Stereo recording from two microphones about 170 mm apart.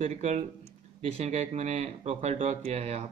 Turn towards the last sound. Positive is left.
turn(degrees=-40)  # may be behind; listen again after turning